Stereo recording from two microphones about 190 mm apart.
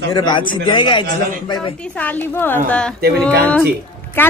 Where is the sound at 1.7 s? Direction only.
5° left (ahead or behind).